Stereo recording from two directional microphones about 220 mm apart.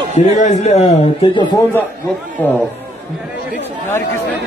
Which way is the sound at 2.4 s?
10° left (ahead or behind).